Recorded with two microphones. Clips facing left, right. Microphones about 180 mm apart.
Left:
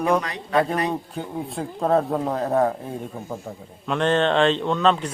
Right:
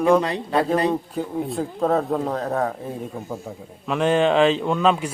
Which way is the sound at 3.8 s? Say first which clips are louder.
Right 2 dB; 5° right (ahead or behind).